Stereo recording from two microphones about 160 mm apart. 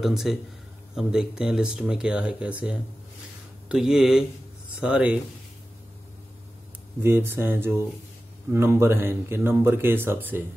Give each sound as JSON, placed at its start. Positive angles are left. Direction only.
{"t": 0.0, "sound": "speech", "side_deg": 0}
{"t": 7.0, "sound": "speech", "side_deg": -15}